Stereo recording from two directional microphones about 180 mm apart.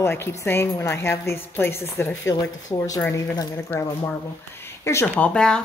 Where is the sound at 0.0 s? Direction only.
15° left (ahead or behind).